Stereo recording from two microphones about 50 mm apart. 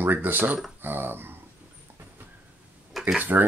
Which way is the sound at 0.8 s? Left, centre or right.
Right.